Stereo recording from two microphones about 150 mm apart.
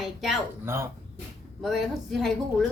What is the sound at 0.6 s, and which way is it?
Speech, 20° right (ahead or behind).